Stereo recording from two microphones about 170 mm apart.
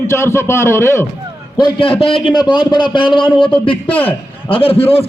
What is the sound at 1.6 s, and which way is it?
A man's voice, 30° left (ahead or behind).